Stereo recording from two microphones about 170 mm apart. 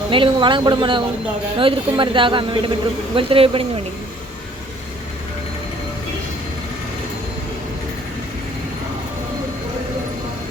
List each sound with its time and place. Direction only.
0.1 s speech: 30° right (ahead or behind)